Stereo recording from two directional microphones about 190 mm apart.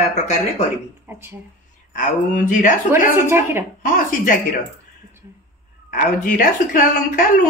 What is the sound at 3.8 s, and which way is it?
Speech, 45° left (ahead or behind).